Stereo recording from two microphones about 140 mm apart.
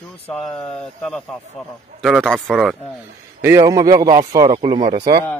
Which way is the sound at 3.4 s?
20° right (ahead or behind).